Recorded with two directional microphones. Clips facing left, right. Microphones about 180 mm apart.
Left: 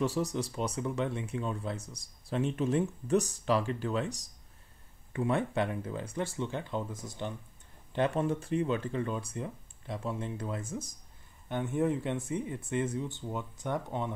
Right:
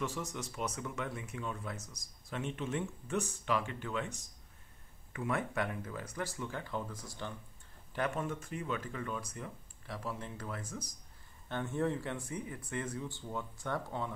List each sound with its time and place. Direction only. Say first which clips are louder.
0.0 s speech: left 8 dB; 35° left (ahead or behind)